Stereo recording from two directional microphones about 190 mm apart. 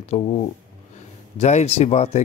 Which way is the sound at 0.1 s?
35° left (ahead or behind).